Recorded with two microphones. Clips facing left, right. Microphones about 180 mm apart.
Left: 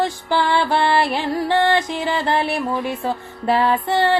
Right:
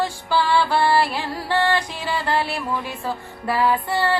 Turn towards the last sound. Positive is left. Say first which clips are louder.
# left 3 dB
turn(degrees=20)  # may be behind; listen again after turning